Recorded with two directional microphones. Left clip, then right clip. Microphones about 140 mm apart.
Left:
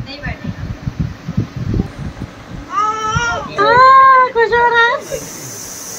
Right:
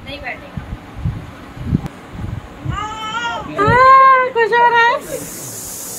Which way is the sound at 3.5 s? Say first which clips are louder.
Left 1 dB; 25° left (ahead or behind).